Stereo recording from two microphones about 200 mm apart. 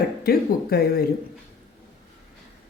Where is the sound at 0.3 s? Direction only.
50° left (ahead or behind).